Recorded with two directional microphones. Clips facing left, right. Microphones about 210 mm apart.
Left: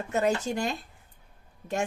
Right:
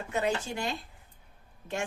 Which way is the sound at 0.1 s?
45° left (ahead or behind).